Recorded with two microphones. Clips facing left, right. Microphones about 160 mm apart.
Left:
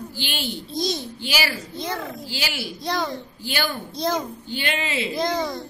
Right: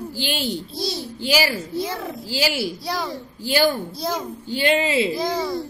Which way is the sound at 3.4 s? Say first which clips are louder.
Right 9 dB; 40° right (ahead or behind).